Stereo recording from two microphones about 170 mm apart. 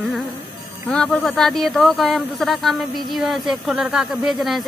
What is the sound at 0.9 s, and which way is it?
Speech, 5° left (ahead or behind).